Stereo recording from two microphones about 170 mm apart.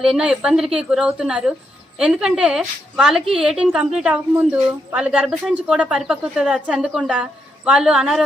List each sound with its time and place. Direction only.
0.0 s a woman's voice: 5° right (ahead or behind)